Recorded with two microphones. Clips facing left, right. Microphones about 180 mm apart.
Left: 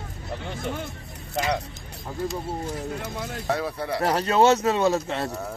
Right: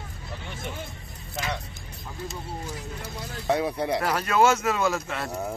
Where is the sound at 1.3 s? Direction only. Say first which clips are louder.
Left 6 dB; 40° left (ahead or behind).